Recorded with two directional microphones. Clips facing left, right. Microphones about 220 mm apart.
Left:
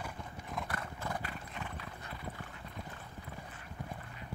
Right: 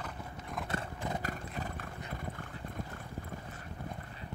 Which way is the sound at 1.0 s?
20° right (ahead or behind).